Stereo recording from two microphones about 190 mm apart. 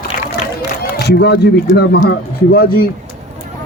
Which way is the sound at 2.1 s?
55° left (ahead or behind).